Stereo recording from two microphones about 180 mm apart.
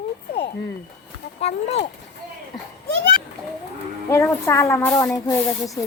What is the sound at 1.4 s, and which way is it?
Speech, 35° left (ahead or behind).